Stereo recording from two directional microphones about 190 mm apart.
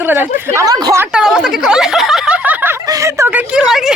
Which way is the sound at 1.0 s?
5° right (ahead or behind).